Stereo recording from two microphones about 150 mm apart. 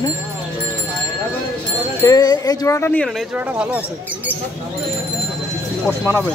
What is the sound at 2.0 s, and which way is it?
Speech, 25° left (ahead or behind).